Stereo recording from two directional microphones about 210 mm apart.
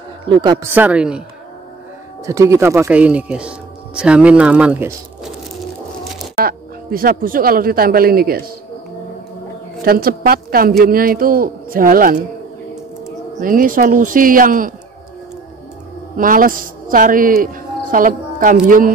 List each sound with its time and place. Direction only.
0.2 s a man's voice: 20° right (ahead or behind)
0.7 s speech: 5° right (ahead or behind)
2.2 s speech: 15° right (ahead or behind)
6.4 s speech: 45° right (ahead or behind)
9.8 s a woman's voice: 45° right (ahead or behind)
13.4 s speech: 40° right (ahead or behind)
16.2 s a woman's voice: 40° right (ahead or behind)